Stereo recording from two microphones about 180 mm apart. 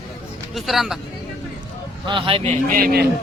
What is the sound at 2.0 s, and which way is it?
Speech, 30° right (ahead or behind).